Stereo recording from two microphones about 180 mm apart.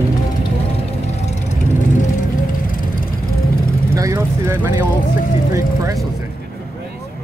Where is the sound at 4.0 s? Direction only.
15° right (ahead or behind).